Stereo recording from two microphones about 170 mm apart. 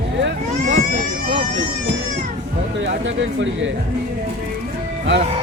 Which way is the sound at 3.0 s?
90° right.